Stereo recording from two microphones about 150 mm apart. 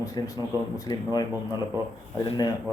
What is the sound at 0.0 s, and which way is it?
Speech, 25° left (ahead or behind).